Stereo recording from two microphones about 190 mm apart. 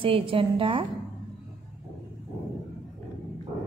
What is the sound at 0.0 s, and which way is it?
Speech, 30° right (ahead or behind).